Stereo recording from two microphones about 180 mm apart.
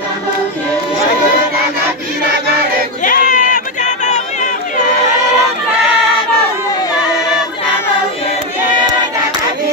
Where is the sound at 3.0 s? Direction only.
50° left (ahead or behind).